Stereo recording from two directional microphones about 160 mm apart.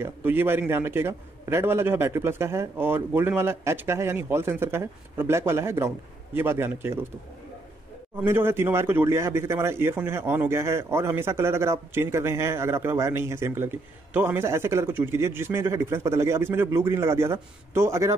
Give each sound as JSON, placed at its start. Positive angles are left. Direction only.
{"t": 0.0, "sound": "a man's voice", "side_deg": -15}
{"t": 8.2, "sound": "a man's voice", "side_deg": -15}